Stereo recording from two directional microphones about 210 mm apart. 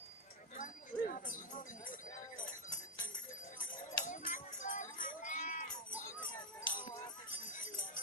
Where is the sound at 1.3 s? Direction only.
40° left (ahead or behind).